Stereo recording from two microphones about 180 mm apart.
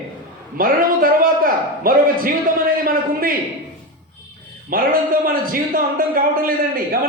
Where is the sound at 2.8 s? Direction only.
55° right (ahead or behind).